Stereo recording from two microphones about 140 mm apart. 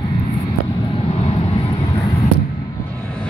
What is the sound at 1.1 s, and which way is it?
Vehicle, 50° left (ahead or behind).